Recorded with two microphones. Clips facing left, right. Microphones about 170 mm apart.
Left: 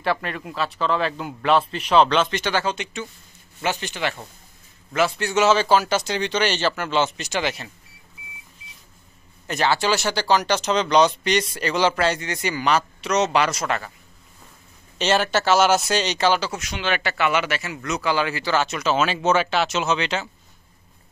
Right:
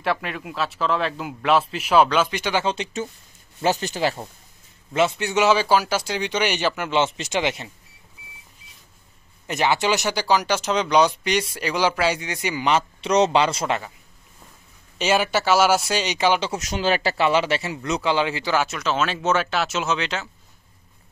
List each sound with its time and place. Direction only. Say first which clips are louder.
0.0 s a man's voice: left 1 dB; centre (ahead or behind)
2.6 s speech: right 2 dB; 30° right (ahead or behind)
4.9 s speech: even; 20° right (ahead or behind)
9.5 s speech: even; 20° right (ahead or behind)
15.0 s speech: even; 10° right (ahead or behind)
16.5 s speech: right 4 dB; 40° right (ahead or behind); by 18.8 s 10° right (ahead or behind)
18.8 s a man's voice: left 2 dB; centre (ahead or behind)